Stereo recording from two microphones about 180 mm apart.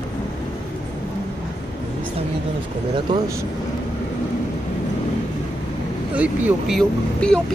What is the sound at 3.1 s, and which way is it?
Speech, 25° right (ahead or behind).